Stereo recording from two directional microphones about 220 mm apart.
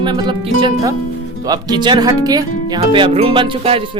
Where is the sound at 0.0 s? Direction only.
20° right (ahead or behind).